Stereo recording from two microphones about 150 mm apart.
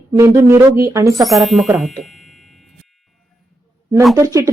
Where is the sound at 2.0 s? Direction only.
Centre (ahead or behind).